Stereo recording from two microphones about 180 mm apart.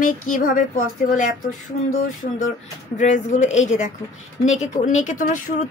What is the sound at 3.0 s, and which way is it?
A woman's voice, 45° left (ahead or behind).